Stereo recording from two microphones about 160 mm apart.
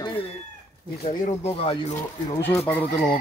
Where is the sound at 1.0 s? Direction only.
40° left (ahead or behind).